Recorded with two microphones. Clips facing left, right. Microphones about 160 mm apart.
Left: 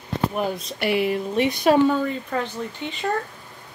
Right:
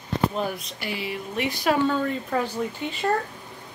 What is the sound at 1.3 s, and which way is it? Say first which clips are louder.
Speech: left 5 dB; 25° left (ahead or behind).